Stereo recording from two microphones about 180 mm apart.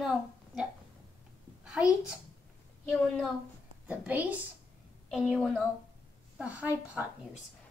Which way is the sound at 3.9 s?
10° right (ahead or behind).